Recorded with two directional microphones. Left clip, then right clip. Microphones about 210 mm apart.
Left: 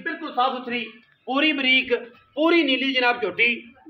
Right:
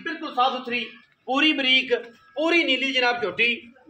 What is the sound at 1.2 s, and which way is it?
A man's voice, 40° left (ahead or behind).